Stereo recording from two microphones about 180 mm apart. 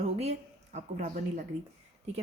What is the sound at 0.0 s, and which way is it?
A woman's voice, 35° right (ahead or behind).